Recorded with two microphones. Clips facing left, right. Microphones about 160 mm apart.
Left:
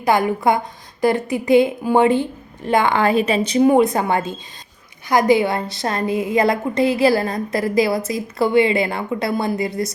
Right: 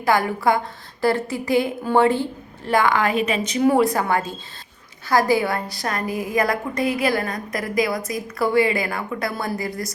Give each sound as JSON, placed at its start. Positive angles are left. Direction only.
{"t": 0.0, "sound": "a woman's voice", "side_deg": 20}
{"t": 3.7, "sound": "a woman's voice", "side_deg": 20}